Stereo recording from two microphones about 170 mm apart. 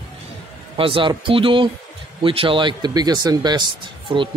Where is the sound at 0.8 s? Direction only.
30° right (ahead or behind).